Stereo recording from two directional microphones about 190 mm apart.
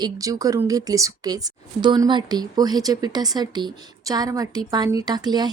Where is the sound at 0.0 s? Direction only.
20° right (ahead or behind).